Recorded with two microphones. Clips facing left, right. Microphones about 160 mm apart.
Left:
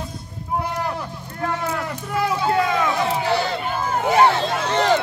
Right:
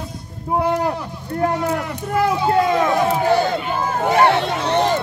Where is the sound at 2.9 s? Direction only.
50° right (ahead or behind).